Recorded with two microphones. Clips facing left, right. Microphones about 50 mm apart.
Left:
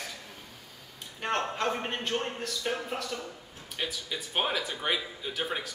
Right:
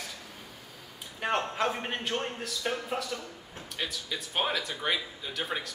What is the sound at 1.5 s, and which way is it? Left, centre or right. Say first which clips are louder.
Speech: even; centre.